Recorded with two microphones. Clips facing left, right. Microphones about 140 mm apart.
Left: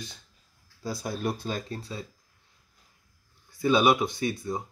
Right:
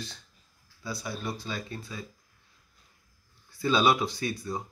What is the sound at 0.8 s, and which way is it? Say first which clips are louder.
Speech: left 4 dB; 45° left (ahead or behind).